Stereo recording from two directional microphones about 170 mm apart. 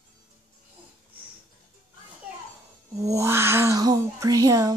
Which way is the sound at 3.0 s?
20° right (ahead or behind).